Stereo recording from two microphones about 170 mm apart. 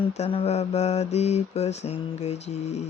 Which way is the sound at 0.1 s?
35° left (ahead or behind).